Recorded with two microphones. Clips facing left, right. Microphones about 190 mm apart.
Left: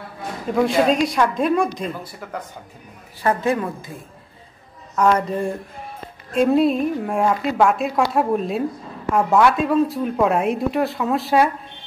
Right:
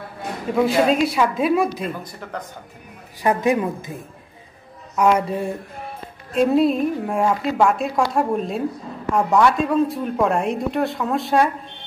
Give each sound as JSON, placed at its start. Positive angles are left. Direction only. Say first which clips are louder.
{"t": 0.6, "sound": "a woman's voice", "louder": "even", "side_deg": 0}
{"t": 3.2, "sound": "a woman's voice", "louder": "right 1 dB", "side_deg": -15}